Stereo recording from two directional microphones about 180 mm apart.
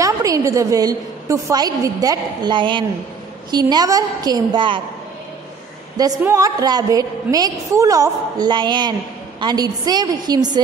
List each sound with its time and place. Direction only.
0.0 s a woman's voice: 20° right (ahead or behind)
5.9 s a woman's voice: 20° right (ahead or behind)